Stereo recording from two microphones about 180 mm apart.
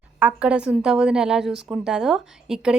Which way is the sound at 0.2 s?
5° right (ahead or behind).